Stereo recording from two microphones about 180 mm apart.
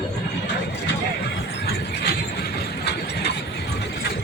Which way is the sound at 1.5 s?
65° left (ahead or behind).